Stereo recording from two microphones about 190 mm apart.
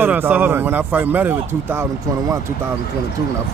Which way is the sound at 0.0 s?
10° right (ahead or behind).